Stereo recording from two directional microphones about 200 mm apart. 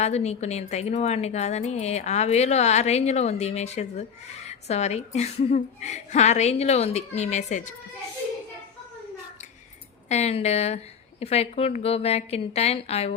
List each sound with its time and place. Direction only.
0.0 s speech: 35° left (ahead or behind)
10.1 s speech: 35° left (ahead or behind)